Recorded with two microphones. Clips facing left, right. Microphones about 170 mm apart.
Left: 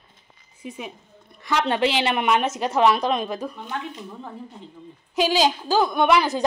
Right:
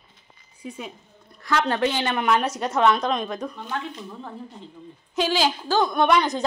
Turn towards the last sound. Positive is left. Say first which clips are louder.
# left 1 dB
turn(degrees=5)  # may be behind; listen again after turning